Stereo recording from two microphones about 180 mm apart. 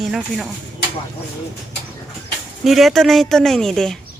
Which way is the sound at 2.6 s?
Centre (ahead or behind).